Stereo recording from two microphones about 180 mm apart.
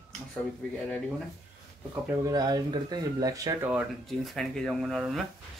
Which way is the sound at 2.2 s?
20° right (ahead or behind).